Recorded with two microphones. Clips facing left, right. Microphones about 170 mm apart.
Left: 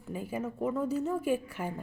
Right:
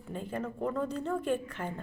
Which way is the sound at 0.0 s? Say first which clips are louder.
Left 1 dB; 10° left (ahead or behind).